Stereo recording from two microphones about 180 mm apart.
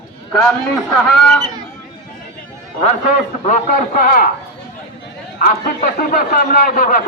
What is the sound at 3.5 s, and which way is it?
Speech, 50° left (ahead or behind).